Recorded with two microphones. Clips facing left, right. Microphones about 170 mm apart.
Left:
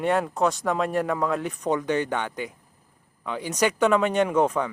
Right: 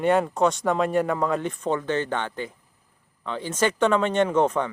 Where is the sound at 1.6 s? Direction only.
10° left (ahead or behind).